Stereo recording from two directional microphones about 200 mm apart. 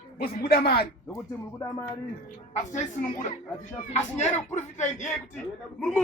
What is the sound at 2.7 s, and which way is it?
Speech, 35° left (ahead or behind).